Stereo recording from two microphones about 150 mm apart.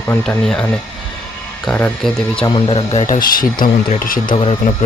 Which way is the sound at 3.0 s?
70° left (ahead or behind).